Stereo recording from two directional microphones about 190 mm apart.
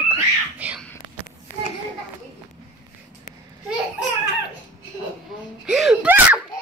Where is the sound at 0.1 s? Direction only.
10° right (ahead or behind).